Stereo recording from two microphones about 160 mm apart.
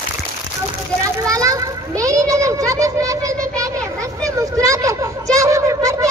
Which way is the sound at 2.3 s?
20° right (ahead or behind).